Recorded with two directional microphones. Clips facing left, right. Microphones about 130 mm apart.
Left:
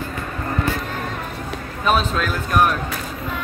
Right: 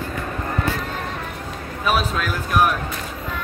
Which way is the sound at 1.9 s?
5° right (ahead or behind).